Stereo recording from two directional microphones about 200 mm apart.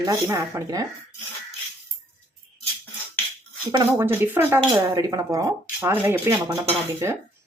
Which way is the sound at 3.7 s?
15° right (ahead or behind).